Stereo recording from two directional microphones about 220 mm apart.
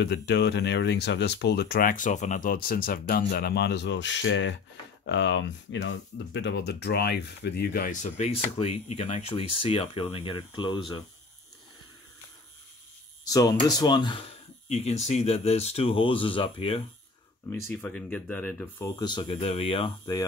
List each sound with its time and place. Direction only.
0.0 s speech: 50° left (ahead or behind); by 11.1 s 20° left (ahead or behind)
13.2 s speech: 15° left (ahead or behind)
14.7 s speech: 30° left (ahead or behind)
17.5 s speech: 10° left (ahead or behind)
18.9 s speech: 20° left (ahead or behind)